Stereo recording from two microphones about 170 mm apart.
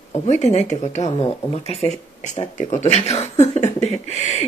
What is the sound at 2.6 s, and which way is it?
Speech, 45° left (ahead or behind).